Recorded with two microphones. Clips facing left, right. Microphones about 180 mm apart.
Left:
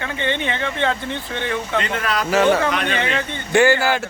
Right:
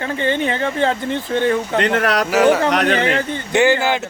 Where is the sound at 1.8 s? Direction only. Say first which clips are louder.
Right 6 dB; 65° right (ahead or behind).